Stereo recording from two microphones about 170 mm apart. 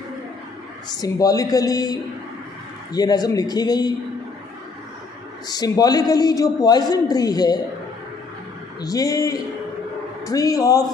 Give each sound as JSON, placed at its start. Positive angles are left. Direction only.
{"t": 1.0, "sound": "a man's voice", "side_deg": 20}
{"t": 5.5, "sound": "a man's voice", "side_deg": 25}
{"t": 8.8, "sound": "a man's voice", "side_deg": 20}